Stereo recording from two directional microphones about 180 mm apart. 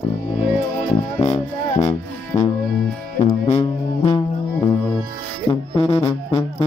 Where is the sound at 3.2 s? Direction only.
35° left (ahead or behind).